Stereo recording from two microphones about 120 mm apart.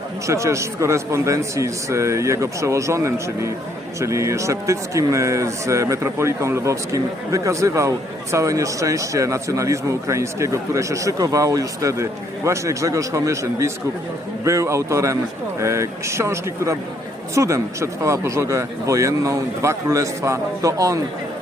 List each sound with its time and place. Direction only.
0.3 s a man's voice: 25° right (ahead or behind)